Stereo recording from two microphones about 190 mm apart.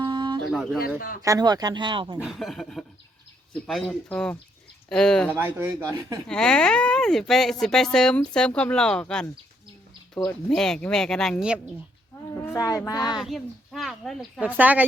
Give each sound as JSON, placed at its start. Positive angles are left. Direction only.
{"t": 0.1, "sound": "a sound", "side_deg": -25}
{"t": 0.5, "sound": "speech", "side_deg": 0}
{"t": 0.9, "sound": "speech", "side_deg": 45}
{"t": 1.2, "sound": "speech", "side_deg": -20}
{"t": 2.1, "sound": "speech", "side_deg": 0}
{"t": 5.3, "sound": "speech", "side_deg": -15}
{"t": 6.2, "sound": "speech", "side_deg": 5}
{"t": 12.3, "sound": "a child's voice", "side_deg": 15}
{"t": 13.1, "sound": "speech", "side_deg": 0}